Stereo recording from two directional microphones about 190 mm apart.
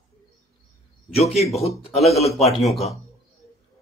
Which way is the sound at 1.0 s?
35° left (ahead or behind).